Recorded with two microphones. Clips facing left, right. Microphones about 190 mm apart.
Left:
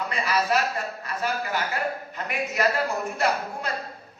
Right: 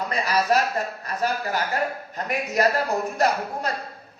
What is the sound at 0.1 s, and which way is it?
A man's voice, 40° right (ahead or behind).